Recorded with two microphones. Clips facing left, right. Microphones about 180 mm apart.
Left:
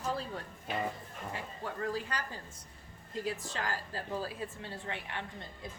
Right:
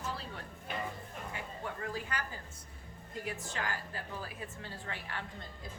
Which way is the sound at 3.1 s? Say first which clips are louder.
Left 3 dB; 30° left (ahead or behind).